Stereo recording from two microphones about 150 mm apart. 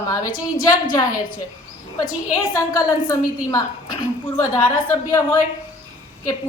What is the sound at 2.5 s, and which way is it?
A woman's voice, 20° left (ahead or behind).